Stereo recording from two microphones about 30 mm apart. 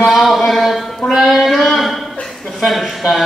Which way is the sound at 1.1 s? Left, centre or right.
Centre.